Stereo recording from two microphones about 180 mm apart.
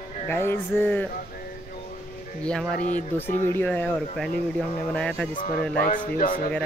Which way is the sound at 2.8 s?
45° left (ahead or behind).